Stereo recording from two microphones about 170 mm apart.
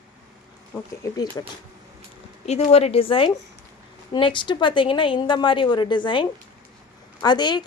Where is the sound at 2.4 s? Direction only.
40° left (ahead or behind).